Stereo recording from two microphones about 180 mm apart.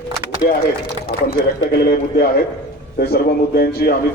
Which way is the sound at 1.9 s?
55° left (ahead or behind).